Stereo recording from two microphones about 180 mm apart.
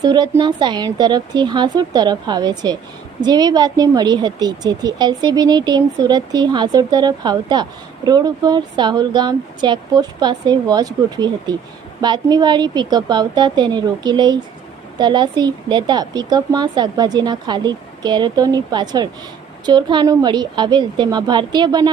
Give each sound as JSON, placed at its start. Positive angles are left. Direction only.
{"t": 0.0, "sound": "speech", "side_deg": -25}